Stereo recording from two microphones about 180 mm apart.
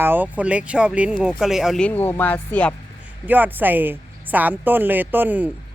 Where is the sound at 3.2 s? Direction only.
10° right (ahead or behind).